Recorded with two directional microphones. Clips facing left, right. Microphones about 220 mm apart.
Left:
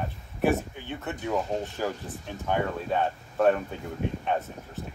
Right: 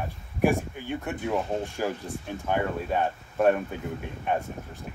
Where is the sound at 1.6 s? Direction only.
15° right (ahead or behind).